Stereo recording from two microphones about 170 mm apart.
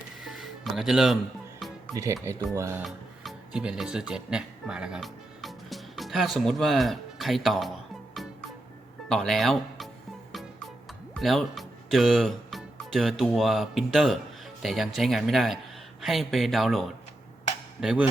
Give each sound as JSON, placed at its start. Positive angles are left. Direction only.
{"t": 0.3, "sound": "music", "side_deg": 0}
{"t": 2.6, "sound": "speech", "side_deg": -15}
{"t": 2.8, "sound": "speech", "side_deg": -5}
{"t": 8.1, "sound": "music", "side_deg": 0}
{"t": 9.0, "sound": "speech", "side_deg": 0}
{"t": 11.1, "sound": "speech", "side_deg": 0}
{"t": 17.7, "sound": "percussion", "side_deg": -5}